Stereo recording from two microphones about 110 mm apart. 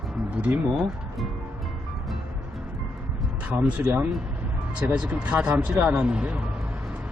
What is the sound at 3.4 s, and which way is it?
Speech, 10° right (ahead or behind).